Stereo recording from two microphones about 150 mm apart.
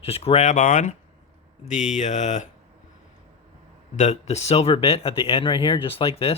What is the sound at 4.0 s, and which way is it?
Speech, 50° left (ahead or behind).